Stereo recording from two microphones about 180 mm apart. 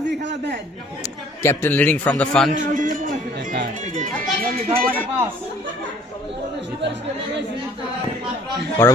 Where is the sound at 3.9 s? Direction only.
40° right (ahead or behind).